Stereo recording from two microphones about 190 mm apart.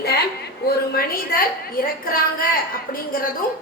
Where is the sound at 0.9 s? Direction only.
50° left (ahead or behind).